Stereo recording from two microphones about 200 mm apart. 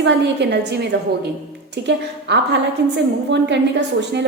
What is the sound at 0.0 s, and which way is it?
A woman's voice, 60° right (ahead or behind).